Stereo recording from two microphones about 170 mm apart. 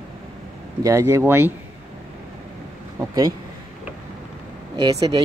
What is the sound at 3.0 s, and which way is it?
Speech, 20° right (ahead or behind).